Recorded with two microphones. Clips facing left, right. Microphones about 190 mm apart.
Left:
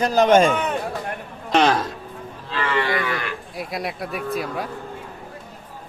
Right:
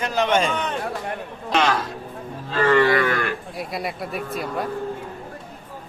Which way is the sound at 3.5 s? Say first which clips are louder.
Even; centre (ahead or behind).